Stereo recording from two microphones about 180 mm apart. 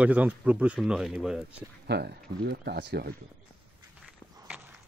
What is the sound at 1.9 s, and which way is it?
Speech, 65° right (ahead or behind).